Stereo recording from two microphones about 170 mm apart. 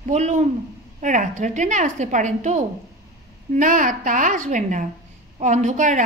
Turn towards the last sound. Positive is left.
turn(degrees=-45)  # may be behind; listen again after turning